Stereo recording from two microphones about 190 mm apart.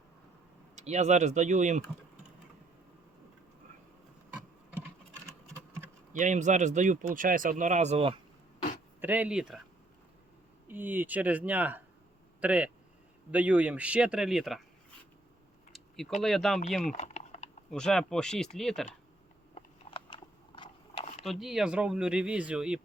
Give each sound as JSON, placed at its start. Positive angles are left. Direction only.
{"t": 0.8, "sound": "speech", "side_deg": -35}
{"t": 6.1, "sound": "speech", "side_deg": -40}
{"t": 9.0, "sound": "speech", "side_deg": -10}
{"t": 10.7, "sound": "speech", "side_deg": -10}
{"t": 15.7, "sound": "a sound", "side_deg": 0}
{"t": 16.2, "sound": "speech", "side_deg": 0}
{"t": 16.8, "sound": "typing", "side_deg": 40}
{"t": 17.7, "sound": "speech", "side_deg": 5}
{"t": 19.5, "sound": "a sound", "side_deg": 25}
{"t": 21.2, "sound": "speech", "side_deg": 0}